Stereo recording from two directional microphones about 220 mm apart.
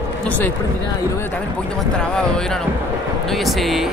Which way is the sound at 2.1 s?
5° left (ahead or behind).